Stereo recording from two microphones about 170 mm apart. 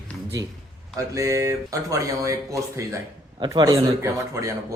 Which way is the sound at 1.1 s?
20° right (ahead or behind).